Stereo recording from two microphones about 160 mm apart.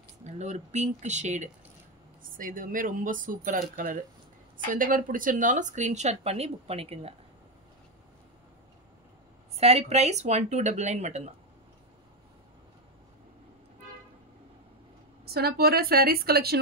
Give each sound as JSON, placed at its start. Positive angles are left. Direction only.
{"t": 0.2, "sound": "speech", "side_deg": -45}
{"t": 2.3, "sound": "speech", "side_deg": -60}
{"t": 9.6, "sound": "speech", "side_deg": -40}
{"t": 15.2, "sound": "a woman's voice", "side_deg": -80}